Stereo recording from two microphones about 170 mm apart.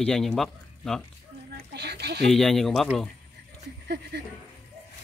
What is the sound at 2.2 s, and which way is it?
Speech, centre (ahead or behind).